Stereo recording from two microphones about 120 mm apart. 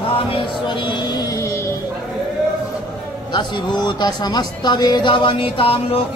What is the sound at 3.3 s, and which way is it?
Speech, 40° left (ahead or behind).